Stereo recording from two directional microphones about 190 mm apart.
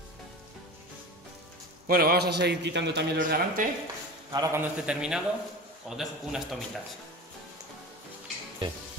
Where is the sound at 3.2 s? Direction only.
45° right (ahead or behind).